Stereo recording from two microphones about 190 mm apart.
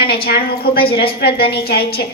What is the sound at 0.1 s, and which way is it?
A woman's voice, 55° left (ahead or behind).